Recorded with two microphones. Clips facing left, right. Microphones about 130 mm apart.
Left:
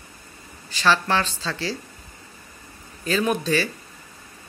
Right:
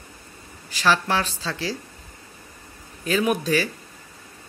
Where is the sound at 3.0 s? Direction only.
10° right (ahead or behind).